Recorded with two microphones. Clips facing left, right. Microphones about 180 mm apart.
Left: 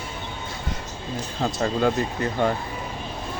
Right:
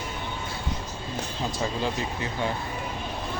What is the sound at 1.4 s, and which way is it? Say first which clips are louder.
Speech: left 7 dB; 55° left (ahead or behind).